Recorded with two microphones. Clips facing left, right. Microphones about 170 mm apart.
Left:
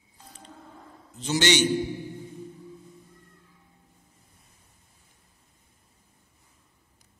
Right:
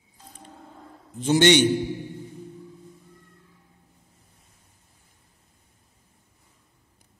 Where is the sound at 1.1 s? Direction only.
55° right (ahead or behind).